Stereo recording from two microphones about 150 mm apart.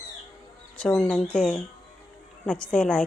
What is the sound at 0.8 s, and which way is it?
A woman's voice, 5° left (ahead or behind).